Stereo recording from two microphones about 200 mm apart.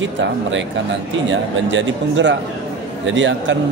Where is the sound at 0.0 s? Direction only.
70° right (ahead or behind).